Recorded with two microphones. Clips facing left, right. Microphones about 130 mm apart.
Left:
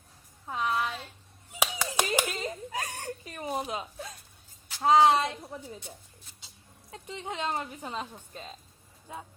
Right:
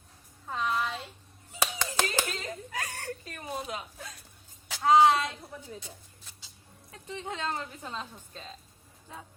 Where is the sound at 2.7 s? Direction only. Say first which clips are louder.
Left 1 dB; 20° left (ahead or behind).